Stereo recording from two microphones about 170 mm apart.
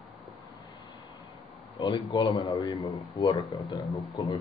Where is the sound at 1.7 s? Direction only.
25° left (ahead or behind).